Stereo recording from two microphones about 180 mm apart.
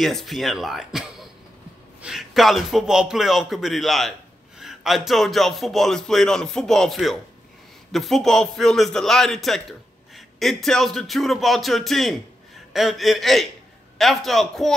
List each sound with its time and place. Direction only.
0.0 s a man's voice: centre (ahead or behind)